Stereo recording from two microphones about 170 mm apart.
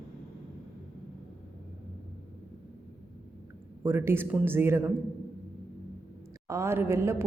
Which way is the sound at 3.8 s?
15° right (ahead or behind).